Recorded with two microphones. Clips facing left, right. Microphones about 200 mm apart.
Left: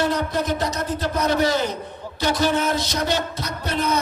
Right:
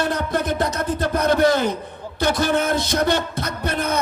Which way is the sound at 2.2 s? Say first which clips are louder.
Right 1 dB; 55° right (ahead or behind).